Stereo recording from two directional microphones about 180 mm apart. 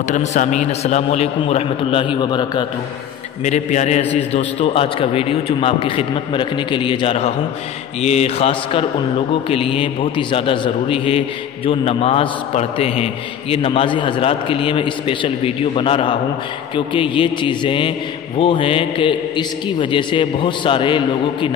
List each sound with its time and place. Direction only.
0.1 s a man's voice: 40° left (ahead or behind); by 2.6 s 25° left (ahead or behind)
3.4 s a man's voice: 40° left (ahead or behind)